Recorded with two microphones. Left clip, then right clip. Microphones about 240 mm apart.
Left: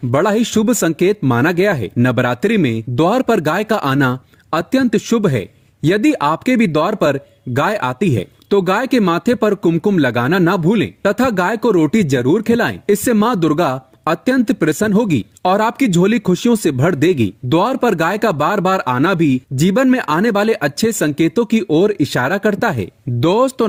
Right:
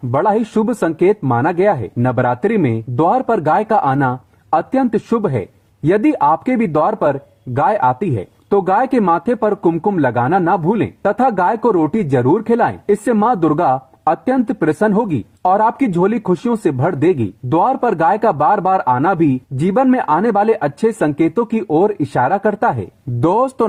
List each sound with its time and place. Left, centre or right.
0.1 s speech: left